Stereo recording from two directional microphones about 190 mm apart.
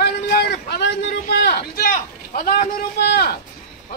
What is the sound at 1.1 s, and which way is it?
A man's voice, 55° left (ahead or behind).